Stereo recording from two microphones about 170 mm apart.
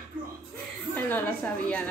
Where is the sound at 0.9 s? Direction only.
10° left (ahead or behind).